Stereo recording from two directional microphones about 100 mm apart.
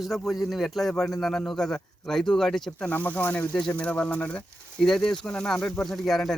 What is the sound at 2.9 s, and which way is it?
Speech, 15° left (ahead or behind).